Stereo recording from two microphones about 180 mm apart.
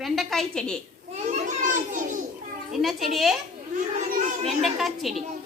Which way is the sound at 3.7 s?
45° right (ahead or behind).